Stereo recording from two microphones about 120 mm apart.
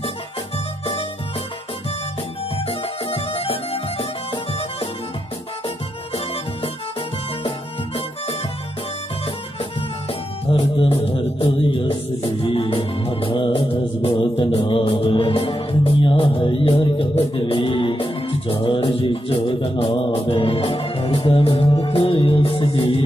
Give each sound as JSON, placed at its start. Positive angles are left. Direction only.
{"t": 2.5, "sound": "music", "side_deg": 50}
{"t": 7.4, "sound": "music", "side_deg": 50}
{"t": 10.5, "sound": "music", "side_deg": 55}